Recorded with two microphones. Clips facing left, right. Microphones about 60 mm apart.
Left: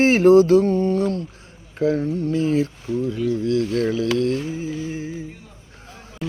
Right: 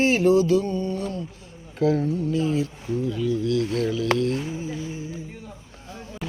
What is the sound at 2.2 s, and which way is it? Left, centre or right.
Speech, left.